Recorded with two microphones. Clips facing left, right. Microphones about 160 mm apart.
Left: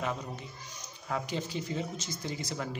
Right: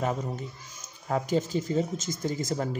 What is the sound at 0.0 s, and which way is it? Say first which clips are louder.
Speech: right 6 dB; 45° right (ahead or behind).